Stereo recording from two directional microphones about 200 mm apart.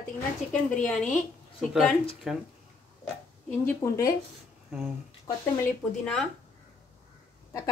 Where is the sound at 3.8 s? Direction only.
15° left (ahead or behind).